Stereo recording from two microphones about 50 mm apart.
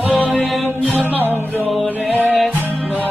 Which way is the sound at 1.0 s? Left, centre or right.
Right.